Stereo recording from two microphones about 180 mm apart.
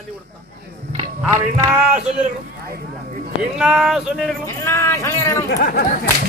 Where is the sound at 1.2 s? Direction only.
20° right (ahead or behind).